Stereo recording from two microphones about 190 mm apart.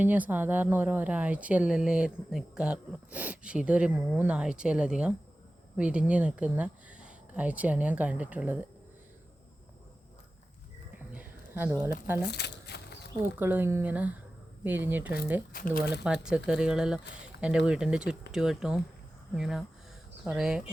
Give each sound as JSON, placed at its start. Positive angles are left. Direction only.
{"t": 0.0, "sound": "a woman's voice", "side_deg": -10}
{"t": 11.1, "sound": "a sound", "side_deg": -10}
{"t": 12.2, "sound": "a sound", "side_deg": 60}
{"t": 13.4, "sound": "a woman's voice", "side_deg": -10}
{"t": 15.5, "sound": "speech", "side_deg": 50}
{"t": 16.0, "sound": "speech", "side_deg": -5}